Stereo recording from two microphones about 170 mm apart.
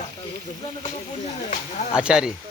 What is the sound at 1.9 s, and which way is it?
Speech, 5° right (ahead or behind).